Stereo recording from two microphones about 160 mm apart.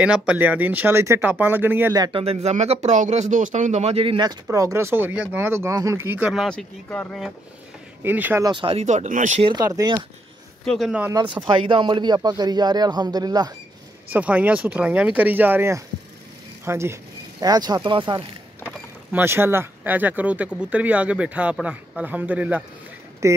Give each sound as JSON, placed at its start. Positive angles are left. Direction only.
{"t": 0.0, "sound": "speech", "side_deg": -5}
{"t": 2.0, "sound": "speech", "side_deg": -30}
{"t": 8.0, "sound": "speech", "side_deg": -10}
{"t": 8.5, "sound": "speech", "side_deg": -35}
{"t": 9.4, "sound": "speech", "side_deg": -30}
{"t": 10.6, "sound": "speech", "side_deg": 0}
{"t": 11.1, "sound": "speech", "side_deg": -30}
{"t": 14.1, "sound": "speech", "side_deg": -10}
{"t": 19.1, "sound": "speech", "side_deg": -15}